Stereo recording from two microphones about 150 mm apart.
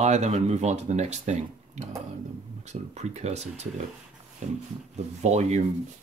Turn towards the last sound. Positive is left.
turn(degrees=-50)  # may be behind; listen again after turning